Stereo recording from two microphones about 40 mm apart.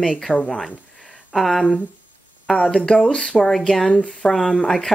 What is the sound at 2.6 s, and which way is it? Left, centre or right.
Speech, left.